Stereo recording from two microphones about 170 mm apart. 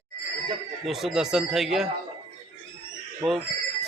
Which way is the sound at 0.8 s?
Centre (ahead or behind).